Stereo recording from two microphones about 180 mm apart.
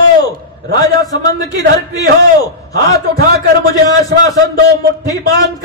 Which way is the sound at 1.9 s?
20° left (ahead or behind).